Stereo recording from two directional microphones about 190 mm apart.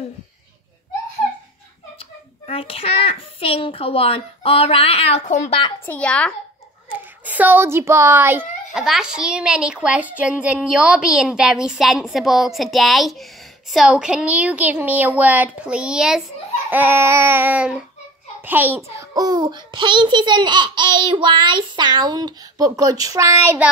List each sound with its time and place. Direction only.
2.4 s a child's voice: 30° left (ahead or behind)
5.9 s a child's voice: 5° left (ahead or behind)
6.9 s a child's voice: 10° right (ahead or behind)
16.7 s child singing: 10° right (ahead or behind)
18.4 s a child's voice: 10° right (ahead or behind)
23.6 s child singing: 5° right (ahead or behind)